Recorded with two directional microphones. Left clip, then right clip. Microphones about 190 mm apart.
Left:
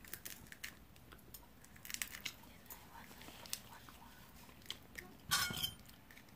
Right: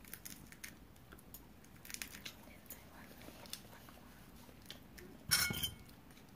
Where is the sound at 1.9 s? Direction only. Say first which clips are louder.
Left 3 dB; 5° right (ahead or behind).